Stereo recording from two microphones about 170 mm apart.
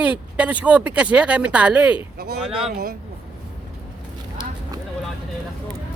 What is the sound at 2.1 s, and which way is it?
Speech, 70° right (ahead or behind).